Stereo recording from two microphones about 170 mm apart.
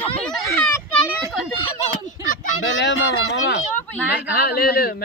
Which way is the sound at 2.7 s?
90° left.